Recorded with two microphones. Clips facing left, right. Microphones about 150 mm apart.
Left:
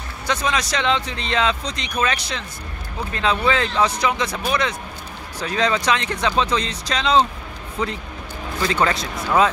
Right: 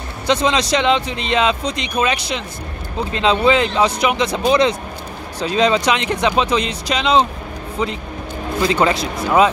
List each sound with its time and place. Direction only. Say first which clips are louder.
0.3 s speech: right 6 dB; 25° right (ahead or behind)
8.5 s speech: right 4 dB; 15° right (ahead or behind)